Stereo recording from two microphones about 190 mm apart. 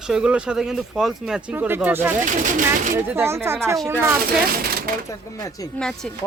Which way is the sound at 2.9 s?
15° right (ahead or behind).